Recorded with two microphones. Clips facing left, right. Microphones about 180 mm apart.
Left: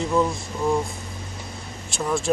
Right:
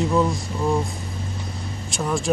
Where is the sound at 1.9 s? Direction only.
Centre (ahead or behind).